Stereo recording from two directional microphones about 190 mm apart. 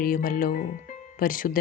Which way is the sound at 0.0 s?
50° left (ahead or behind).